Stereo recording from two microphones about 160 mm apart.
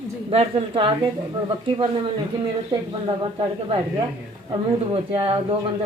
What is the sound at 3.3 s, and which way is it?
A man's voice, 30° right (ahead or behind).